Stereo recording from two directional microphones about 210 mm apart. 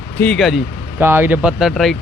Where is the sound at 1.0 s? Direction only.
10° right (ahead or behind).